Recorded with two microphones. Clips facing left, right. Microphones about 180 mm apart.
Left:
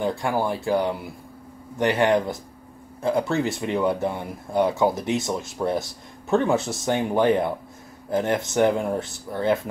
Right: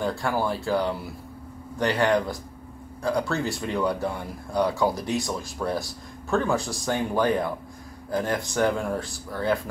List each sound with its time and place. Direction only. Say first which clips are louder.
0.0 s speech: left 2 dB; 20° left (ahead or behind)